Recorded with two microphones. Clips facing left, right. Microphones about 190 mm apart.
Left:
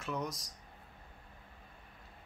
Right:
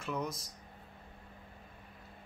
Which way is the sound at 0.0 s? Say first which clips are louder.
Right 1 dB; centre (ahead or behind).